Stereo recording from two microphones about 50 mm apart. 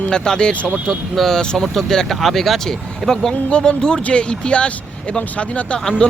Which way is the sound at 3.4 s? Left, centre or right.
Centre.